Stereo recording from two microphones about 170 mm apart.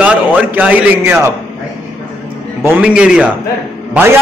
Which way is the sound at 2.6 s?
10° right (ahead or behind).